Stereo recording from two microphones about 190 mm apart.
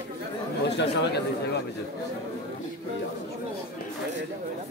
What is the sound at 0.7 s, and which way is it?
Speech, 60° left (ahead or behind).